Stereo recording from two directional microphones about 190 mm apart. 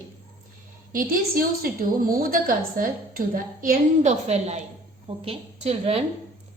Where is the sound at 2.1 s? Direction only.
50° right (ahead or behind).